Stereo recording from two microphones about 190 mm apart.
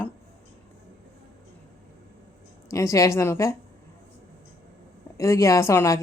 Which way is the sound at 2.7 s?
15° left (ahead or behind).